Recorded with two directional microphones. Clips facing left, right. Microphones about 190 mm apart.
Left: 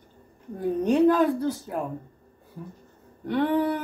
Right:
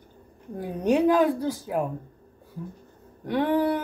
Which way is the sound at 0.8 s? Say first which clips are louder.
Even; 10° right (ahead or behind).